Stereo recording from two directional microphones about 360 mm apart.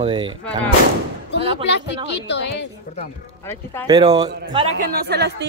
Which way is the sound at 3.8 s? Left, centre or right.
Centre.